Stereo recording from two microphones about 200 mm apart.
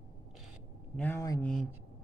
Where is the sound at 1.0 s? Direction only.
10° left (ahead or behind).